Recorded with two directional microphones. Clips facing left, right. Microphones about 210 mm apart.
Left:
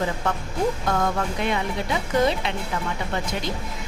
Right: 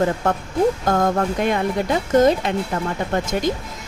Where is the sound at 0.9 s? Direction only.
45° right (ahead or behind).